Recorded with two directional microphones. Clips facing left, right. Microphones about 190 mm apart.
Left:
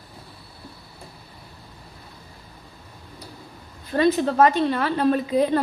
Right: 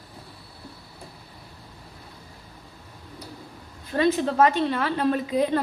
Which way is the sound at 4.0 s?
40° left (ahead or behind).